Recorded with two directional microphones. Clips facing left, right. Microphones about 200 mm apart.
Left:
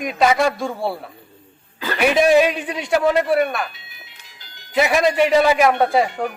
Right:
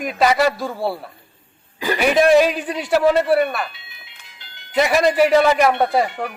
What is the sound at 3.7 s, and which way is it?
Music, 45° left (ahead or behind).